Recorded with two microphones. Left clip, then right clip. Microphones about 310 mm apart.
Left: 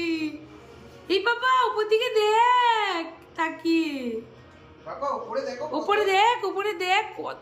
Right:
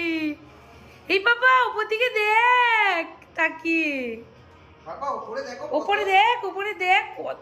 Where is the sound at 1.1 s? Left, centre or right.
Centre.